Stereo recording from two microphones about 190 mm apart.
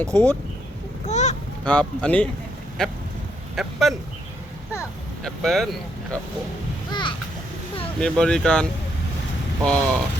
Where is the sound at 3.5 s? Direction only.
Centre (ahead or behind).